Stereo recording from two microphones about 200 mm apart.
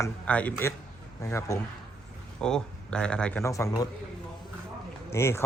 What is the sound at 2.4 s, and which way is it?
Speech, 5° left (ahead or behind).